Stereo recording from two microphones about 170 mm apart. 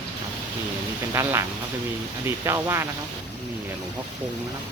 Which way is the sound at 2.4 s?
15° right (ahead or behind).